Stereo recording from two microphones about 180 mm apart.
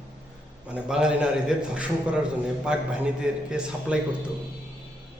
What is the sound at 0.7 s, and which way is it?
A man's voice, 5° right (ahead or behind).